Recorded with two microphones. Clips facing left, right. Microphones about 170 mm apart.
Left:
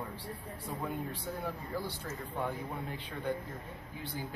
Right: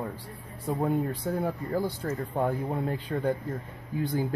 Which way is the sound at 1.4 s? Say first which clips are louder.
Right 9 dB; 50° right (ahead or behind).